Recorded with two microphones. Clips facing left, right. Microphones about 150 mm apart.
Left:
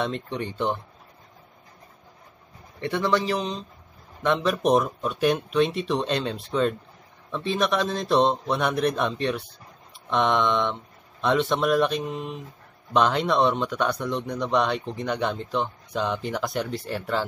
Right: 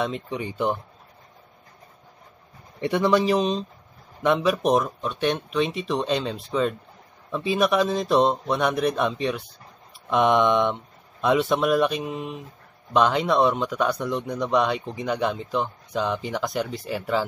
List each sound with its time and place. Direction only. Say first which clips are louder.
0.0 s a man's voice: right 1 dB; 5° right (ahead or behind)
2.8 s speech: right 4 dB; 15° right (ahead or behind)
4.2 s a man's voice: right 2 dB; 10° right (ahead or behind)